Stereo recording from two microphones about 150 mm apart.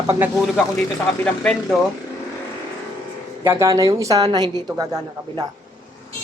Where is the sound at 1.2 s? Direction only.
5° left (ahead or behind).